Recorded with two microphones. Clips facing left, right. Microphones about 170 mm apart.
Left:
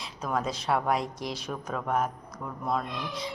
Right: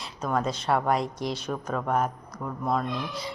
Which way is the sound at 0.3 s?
Centre (ahead or behind).